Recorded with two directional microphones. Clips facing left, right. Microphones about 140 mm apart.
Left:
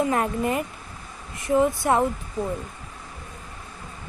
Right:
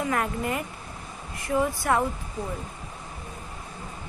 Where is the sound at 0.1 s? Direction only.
25° left (ahead or behind).